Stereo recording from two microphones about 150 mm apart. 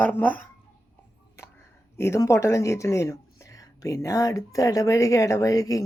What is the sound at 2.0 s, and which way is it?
A woman's voice, 20° left (ahead or behind).